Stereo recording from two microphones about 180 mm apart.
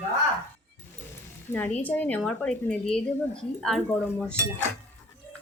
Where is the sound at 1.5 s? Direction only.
10° left (ahead or behind).